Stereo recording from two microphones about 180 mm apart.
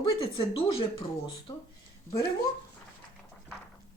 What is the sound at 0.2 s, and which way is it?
Speech, 30° left (ahead or behind).